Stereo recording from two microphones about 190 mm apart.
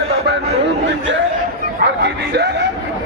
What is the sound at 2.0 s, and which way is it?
Speech, 60° right (ahead or behind).